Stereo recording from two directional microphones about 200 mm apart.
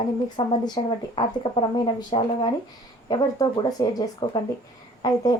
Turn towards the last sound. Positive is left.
turn(degrees=20)  # may be behind; listen again after turning